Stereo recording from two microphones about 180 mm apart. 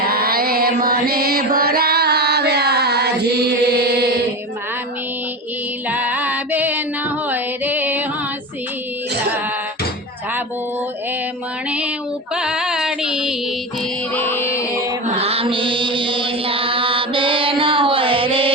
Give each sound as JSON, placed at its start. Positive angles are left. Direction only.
{"t": 0.0, "sound": "music", "side_deg": -55}
{"t": 5.9, "sound": "female singing", "side_deg": -10}
{"t": 7.3, "sound": "music", "side_deg": -10}
{"t": 12.3, "sound": "female singing", "side_deg": -5}
{"t": 14.2, "sound": "music", "side_deg": 10}
{"t": 15.1, "sound": "mantra", "side_deg": -35}